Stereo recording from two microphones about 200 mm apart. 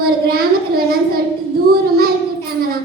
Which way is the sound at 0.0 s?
50° right (ahead or behind).